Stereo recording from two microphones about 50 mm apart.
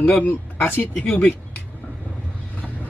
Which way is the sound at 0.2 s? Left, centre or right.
Left.